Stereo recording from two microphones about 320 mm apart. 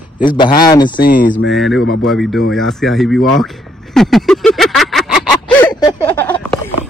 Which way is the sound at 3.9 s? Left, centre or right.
Centre.